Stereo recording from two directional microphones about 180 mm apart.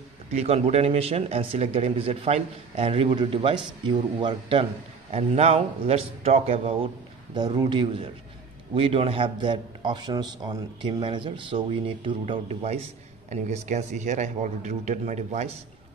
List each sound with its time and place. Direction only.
0.3 s speech: 35° right (ahead or behind)
7.3 s a man's voice: 25° right (ahead or behind); by 15.5 s 40° right (ahead or behind)